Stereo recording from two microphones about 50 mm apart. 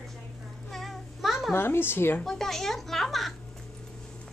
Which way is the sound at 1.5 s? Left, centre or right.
Left.